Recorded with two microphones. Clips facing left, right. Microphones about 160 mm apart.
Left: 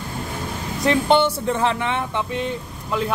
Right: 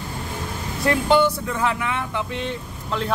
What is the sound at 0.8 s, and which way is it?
Speech, 25° left (ahead or behind).